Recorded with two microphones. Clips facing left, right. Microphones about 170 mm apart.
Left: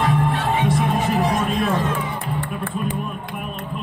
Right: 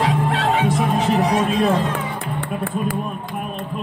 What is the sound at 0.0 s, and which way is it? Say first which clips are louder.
Music: right 1 dB; 80° right.